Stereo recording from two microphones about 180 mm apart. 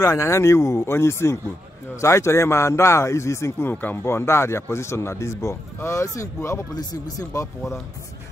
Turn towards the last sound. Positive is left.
turn(degrees=15)  # may be behind; listen again after turning